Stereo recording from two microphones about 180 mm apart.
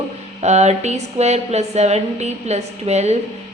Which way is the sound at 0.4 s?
40° right (ahead or behind).